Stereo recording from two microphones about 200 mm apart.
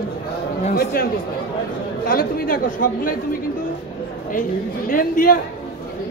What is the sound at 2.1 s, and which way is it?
Speech, 45° left (ahead or behind).